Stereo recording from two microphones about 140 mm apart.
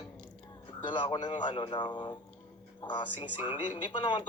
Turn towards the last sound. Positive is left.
turn(degrees=35)  # may be behind; listen again after turning